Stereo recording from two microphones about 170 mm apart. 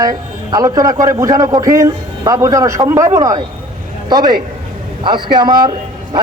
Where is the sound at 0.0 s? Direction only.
20° right (ahead or behind).